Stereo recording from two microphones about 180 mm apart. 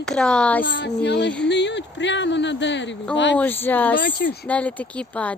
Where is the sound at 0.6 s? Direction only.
90° left.